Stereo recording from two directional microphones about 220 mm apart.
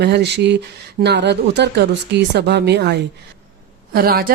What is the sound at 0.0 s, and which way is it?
A woman's voice, 50° right (ahead or behind).